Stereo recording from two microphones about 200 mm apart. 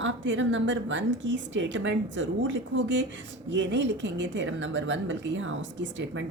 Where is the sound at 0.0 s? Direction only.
70° right (ahead or behind).